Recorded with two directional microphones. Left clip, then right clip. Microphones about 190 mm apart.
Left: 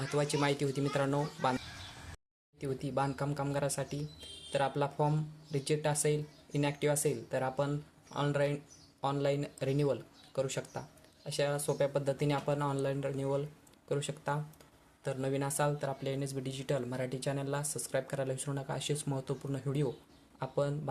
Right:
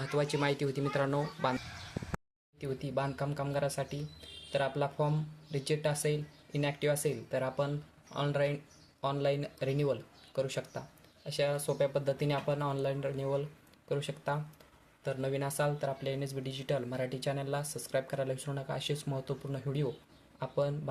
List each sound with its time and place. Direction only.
0.0 s speech: centre (ahead or behind)
2.6 s speech: 5° left (ahead or behind)